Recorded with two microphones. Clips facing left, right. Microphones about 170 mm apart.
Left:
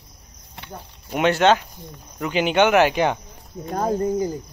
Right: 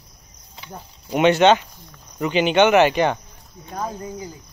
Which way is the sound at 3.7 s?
50° left (ahead or behind).